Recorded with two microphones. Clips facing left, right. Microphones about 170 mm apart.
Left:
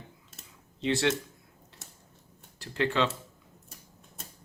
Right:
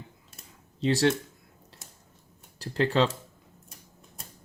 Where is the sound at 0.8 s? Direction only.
40° right (ahead or behind).